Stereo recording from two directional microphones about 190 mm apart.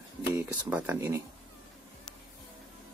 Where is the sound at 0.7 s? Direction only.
10° right (ahead or behind).